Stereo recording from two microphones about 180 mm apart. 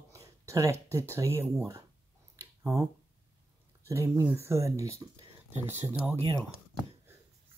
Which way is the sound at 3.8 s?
15° right (ahead or behind).